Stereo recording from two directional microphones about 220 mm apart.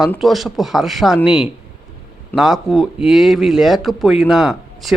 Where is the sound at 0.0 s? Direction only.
Centre (ahead or behind).